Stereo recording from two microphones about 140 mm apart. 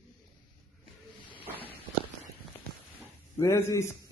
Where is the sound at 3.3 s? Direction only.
20° left (ahead or behind).